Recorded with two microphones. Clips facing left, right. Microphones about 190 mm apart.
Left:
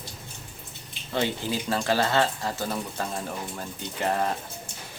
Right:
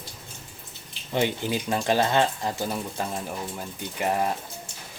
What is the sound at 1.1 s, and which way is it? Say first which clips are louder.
Speech: right 2 dB; 15° right (ahead or behind).